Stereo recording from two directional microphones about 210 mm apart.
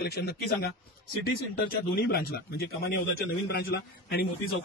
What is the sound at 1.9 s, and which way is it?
A man's voice, 50° left (ahead or behind).